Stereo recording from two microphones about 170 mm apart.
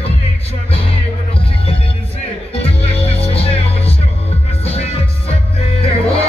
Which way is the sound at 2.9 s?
35° left (ahead or behind).